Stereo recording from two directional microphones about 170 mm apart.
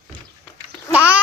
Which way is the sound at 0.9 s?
10° right (ahead or behind).